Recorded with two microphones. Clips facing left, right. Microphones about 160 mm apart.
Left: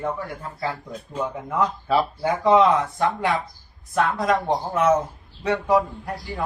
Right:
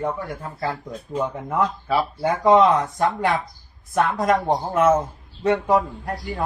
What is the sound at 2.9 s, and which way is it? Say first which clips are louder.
Speech: right 1 dB; 45° right (ahead or behind).